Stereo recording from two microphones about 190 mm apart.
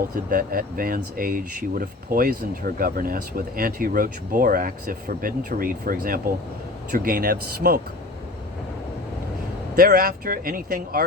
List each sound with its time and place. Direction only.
0.3 s speech: 50° right (ahead or behind)
9.7 s speech: 50° right (ahead or behind)